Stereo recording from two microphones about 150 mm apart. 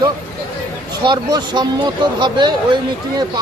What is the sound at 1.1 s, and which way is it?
Speech, 30° right (ahead or behind).